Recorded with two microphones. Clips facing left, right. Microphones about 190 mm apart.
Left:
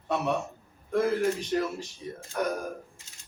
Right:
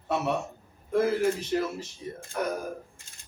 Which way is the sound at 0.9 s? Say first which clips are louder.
Right 1 dB; 5° right (ahead or behind).